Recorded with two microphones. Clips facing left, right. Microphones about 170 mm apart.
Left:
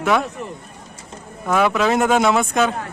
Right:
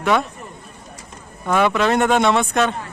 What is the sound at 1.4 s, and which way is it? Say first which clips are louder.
Speech: even; centre (ahead or behind).